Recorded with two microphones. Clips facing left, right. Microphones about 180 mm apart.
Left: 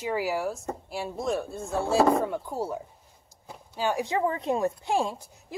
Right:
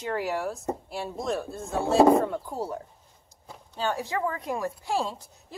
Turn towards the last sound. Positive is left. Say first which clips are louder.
# left 2 dB
turn(degrees=15)  # may be behind; listen again after turning